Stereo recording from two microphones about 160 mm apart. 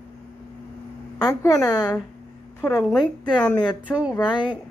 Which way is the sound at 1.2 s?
20° left (ahead or behind).